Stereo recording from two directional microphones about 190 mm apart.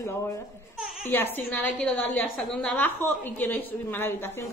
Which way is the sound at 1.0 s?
10° left (ahead or behind).